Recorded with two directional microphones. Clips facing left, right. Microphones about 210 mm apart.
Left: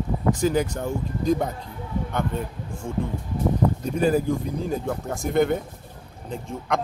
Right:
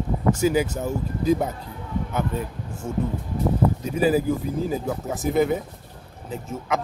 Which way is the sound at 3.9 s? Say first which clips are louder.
Right 1 dB; 5° right (ahead or behind).